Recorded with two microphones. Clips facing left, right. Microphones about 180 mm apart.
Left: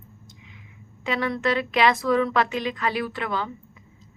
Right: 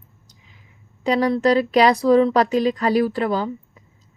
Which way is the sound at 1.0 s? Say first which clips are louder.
Right 7 dB; 35° right (ahead or behind).